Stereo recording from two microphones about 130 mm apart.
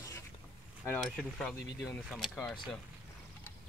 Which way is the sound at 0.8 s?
5° left (ahead or behind).